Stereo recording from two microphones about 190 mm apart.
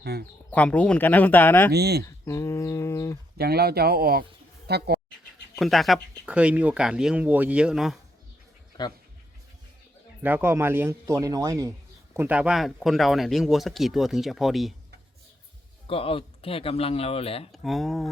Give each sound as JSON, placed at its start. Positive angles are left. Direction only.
{"t": 0.0, "sound": "speech", "side_deg": -55}
{"t": 0.5, "sound": "speech", "side_deg": 5}
{"t": 1.7, "sound": "speech", "side_deg": -55}
{"t": 2.0, "sound": "a sound", "side_deg": 15}
{"t": 3.3, "sound": "speech", "side_deg": -55}
{"t": 5.5, "sound": "speech", "side_deg": 0}
{"t": 10.2, "sound": "speech", "side_deg": -10}
{"t": 15.9, "sound": "speech", "side_deg": 30}
{"t": 17.5, "sound": "speech", "side_deg": 0}